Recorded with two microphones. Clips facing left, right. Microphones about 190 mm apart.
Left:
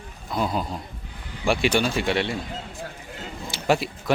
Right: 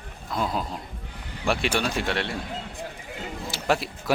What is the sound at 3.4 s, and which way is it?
Speech, centre (ahead or behind).